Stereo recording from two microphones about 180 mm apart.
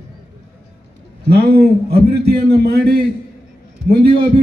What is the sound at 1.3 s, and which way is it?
A man's voice, 60° right (ahead or behind).